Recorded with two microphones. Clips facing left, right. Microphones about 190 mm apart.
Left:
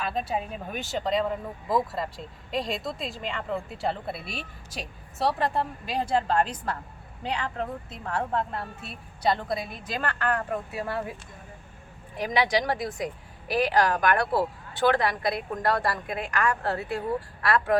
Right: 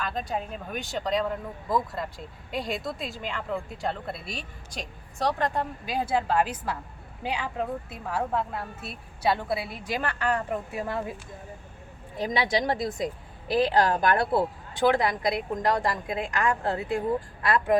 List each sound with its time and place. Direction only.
0.0 s a woman's voice: 5° left (ahead or behind); by 11.0 s 20° right (ahead or behind)
12.1 s a woman's voice: 25° right (ahead or behind)